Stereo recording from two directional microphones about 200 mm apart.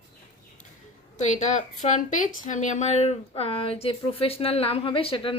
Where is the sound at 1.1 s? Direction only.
35° left (ahead or behind).